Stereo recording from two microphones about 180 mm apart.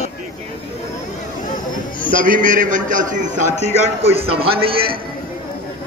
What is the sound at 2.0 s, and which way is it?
A man's voice, 50° right (ahead or behind).